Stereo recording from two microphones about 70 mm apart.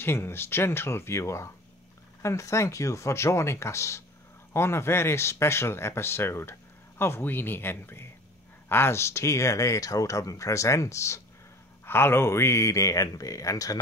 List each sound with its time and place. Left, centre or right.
0.0 s speech: left
11.8 s speech: left